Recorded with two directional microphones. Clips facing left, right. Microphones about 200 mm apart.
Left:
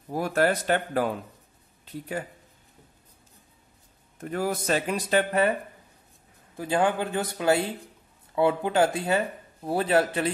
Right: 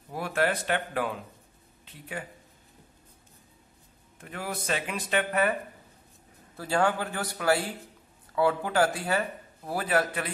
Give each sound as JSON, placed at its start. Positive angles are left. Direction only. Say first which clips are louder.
{"t": 0.1, "sound": "speech", "louder": "left 4 dB", "side_deg": 40}
{"t": 4.2, "sound": "speech", "louder": "left 8 dB", "side_deg": 40}
{"t": 6.5, "sound": "a man's voice", "louder": "left 2 dB", "side_deg": 15}